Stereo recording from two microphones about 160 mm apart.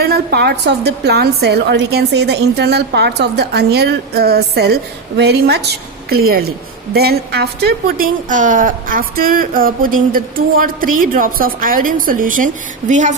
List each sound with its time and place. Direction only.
0.0 s a woman's voice: 80° right
6.1 s a woman's voice: 70° right (ahead or behind)
12.9 s a sound: 50° right (ahead or behind)